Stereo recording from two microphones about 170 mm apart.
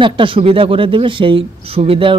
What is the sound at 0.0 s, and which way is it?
A man's voice, 30° right (ahead or behind).